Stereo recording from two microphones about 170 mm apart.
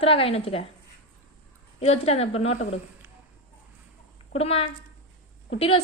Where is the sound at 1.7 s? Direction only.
35° left (ahead or behind).